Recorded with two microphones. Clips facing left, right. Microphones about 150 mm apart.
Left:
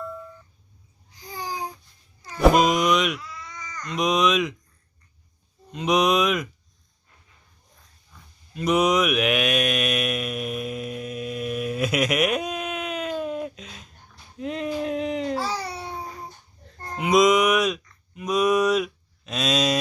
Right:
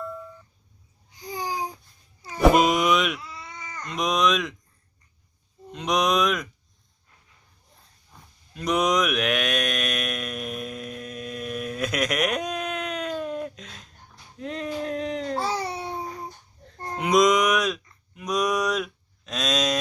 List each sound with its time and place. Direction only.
2.2 s vehicle: centre (ahead or behind)
3.3 s baby cry: 30° right (ahead or behind)
3.8 s speech: centre (ahead or behind)
5.7 s speech: 5° left (ahead or behind)
8.5 s mantra: 5° left (ahead or behind)
14.3 s a sound: 10° left (ahead or behind)
15.4 s babbling: 25° right (ahead or behind)
17.0 s a sound: 5° left (ahead or behind)